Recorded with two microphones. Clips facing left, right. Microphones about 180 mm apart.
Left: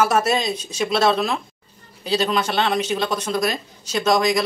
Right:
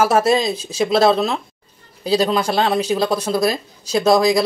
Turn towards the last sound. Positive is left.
turn(degrees=-35)  # may be behind; listen again after turning